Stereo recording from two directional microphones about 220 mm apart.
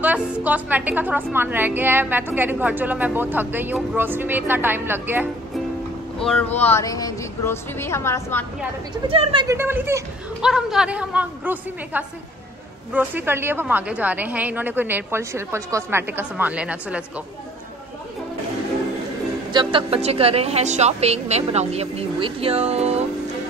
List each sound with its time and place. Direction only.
0.0 s a woman's voice: 5° right (ahead or behind)
6.1 s speech: 5° left (ahead or behind)
9.0 s a woman's voice: 25° right (ahead or behind); by 17.0 s 5° right (ahead or behind)
19.5 s a woman's voice: 25° right (ahead or behind)